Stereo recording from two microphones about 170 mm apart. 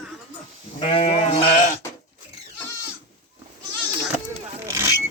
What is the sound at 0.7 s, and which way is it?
Sheep, 35° left (ahead or behind).